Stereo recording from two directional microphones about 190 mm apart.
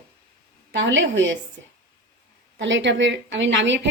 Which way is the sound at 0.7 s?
75° right (ahead or behind).